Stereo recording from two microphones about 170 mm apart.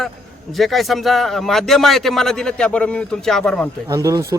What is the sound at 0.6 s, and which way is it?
Speech, centre (ahead or behind).